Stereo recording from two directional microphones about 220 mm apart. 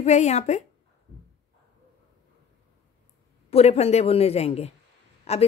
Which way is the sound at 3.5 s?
30° left (ahead or behind).